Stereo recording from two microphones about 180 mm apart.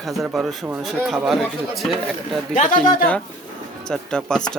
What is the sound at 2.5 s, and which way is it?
Speech, 45° left (ahead or behind).